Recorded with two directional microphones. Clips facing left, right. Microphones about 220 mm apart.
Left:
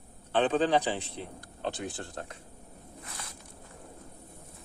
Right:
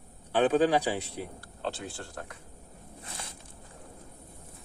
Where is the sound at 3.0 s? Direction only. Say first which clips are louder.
Right 2 dB; 25° right (ahead or behind).